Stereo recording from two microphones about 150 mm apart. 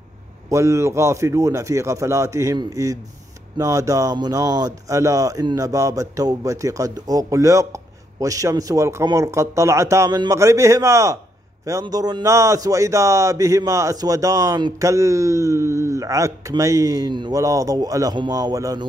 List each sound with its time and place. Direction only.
0.5 s a man's voice: 20° right (ahead or behind)